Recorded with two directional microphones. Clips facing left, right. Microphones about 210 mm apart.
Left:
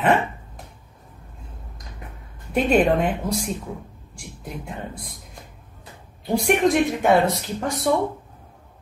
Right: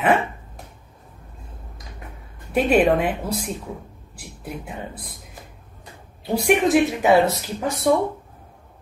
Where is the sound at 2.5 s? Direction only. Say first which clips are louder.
Right 1 dB; 5° right (ahead or behind).